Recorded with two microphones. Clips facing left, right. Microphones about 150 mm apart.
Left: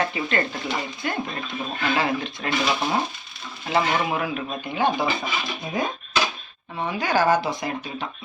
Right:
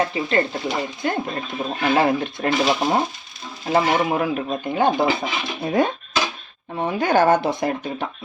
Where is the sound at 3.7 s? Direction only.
40° right (ahead or behind).